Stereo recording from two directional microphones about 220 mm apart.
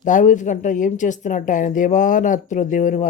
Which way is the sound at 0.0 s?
35° left (ahead or behind).